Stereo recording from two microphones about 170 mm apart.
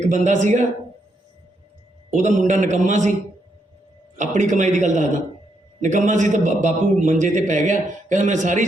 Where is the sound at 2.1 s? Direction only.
45° right (ahead or behind).